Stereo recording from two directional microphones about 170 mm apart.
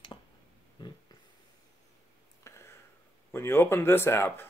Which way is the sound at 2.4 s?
15° left (ahead or behind).